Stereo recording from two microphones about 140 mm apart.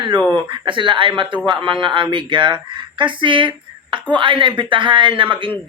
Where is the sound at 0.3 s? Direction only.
30° right (ahead or behind).